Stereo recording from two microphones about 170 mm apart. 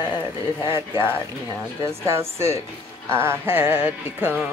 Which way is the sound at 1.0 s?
15° right (ahead or behind).